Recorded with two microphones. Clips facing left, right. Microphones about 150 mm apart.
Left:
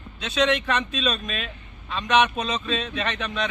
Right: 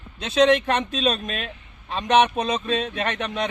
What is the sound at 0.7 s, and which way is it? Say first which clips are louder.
A man's voice: right 3 dB; 50° right (ahead or behind).